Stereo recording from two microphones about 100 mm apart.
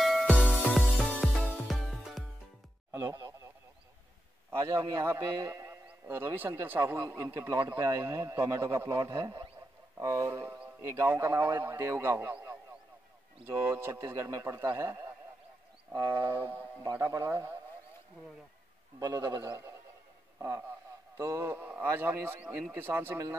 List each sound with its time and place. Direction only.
0.3 s music: 10° right (ahead or behind)
0.7 s music: 5° left (ahead or behind)
3.1 s radio: 45° right (ahead or behind)
4.5 s a man's voice: 30° right (ahead or behind)
16.8 s speech: 35° right (ahead or behind)
18.9 s a man's voice: 40° right (ahead or behind)